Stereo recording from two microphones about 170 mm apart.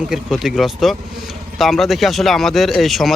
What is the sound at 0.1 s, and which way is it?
Speech, centre (ahead or behind).